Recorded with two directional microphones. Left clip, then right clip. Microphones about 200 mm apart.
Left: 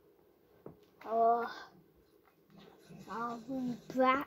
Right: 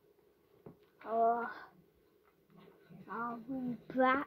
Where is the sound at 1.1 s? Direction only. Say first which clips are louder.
Left 2 dB; 20° right (ahead or behind).